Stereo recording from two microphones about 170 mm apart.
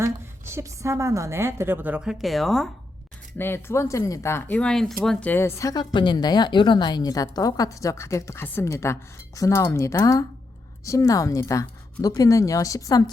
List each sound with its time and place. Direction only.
0.0 s a woman's voice: 15° right (ahead or behind); by 2.6 s centre (ahead or behind)
3.3 s speech: 15° left (ahead or behind)